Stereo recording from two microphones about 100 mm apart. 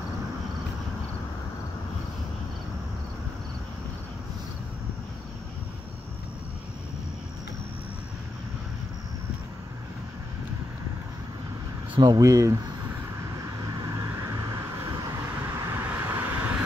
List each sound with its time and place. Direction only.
11.9 s speech: 45° right (ahead or behind)
12.2 s speech: 35° right (ahead or behind)
13.7 s vehicle: 45° right (ahead or behind)
15.7 s vehicle: 20° right (ahead or behind)